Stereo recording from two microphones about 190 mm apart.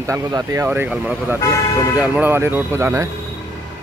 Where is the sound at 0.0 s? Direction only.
20° right (ahead or behind).